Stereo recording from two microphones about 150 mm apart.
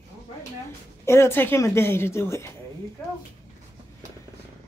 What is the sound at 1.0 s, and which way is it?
Speech, 15° left (ahead or behind).